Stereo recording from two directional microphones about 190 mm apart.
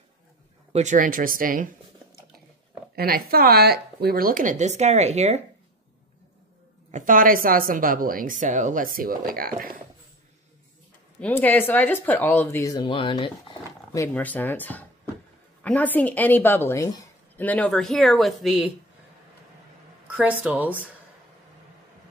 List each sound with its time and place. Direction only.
0.7 s a woman's voice: 40° right (ahead or behind)
3.0 s a woman's voice: 55° right (ahead or behind); by 5.4 s 35° right (ahead or behind)
6.9 s a woman's voice: 40° right (ahead or behind)
11.1 s speech: 10° left (ahead or behind); by 13.3 s 25° left (ahead or behind)
13.9 s speech: 10° left (ahead or behind)
20.2 s speech: 5° right (ahead or behind)